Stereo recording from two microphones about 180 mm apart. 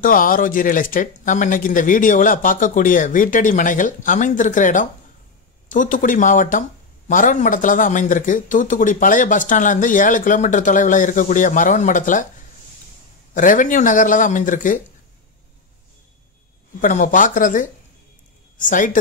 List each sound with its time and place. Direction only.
0.0 s speech: 50° left (ahead or behind)
13.3 s speech: 45° left (ahead or behind)
16.8 s speech: 45° left (ahead or behind)